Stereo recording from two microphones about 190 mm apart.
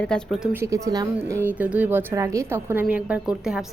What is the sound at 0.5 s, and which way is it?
A woman's voice, 15° right (ahead or behind).